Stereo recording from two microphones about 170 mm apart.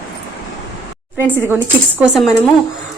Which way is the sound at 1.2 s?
10° right (ahead or behind).